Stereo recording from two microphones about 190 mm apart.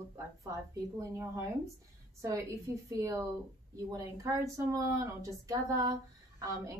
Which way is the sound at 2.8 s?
15° right (ahead or behind).